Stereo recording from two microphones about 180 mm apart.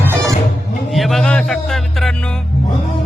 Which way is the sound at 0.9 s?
Centre (ahead or behind).